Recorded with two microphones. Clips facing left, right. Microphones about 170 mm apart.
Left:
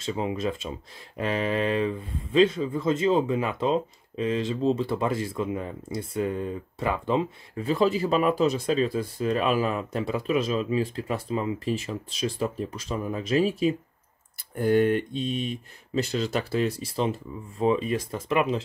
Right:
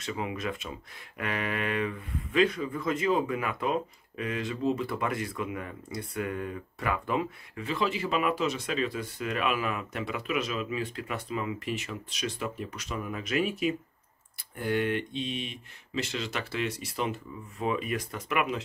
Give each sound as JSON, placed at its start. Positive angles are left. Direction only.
{"t": 0.0, "sound": "speech", "side_deg": 30}